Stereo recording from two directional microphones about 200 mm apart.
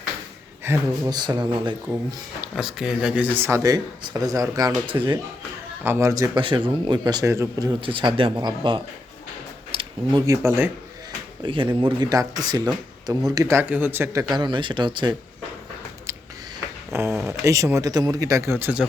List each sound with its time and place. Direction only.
0.6 s speech: 15° right (ahead or behind)
2.4 s speech: centre (ahead or behind)
11.4 s speech: 25° right (ahead or behind)
16.9 s speech: 15° right (ahead or behind)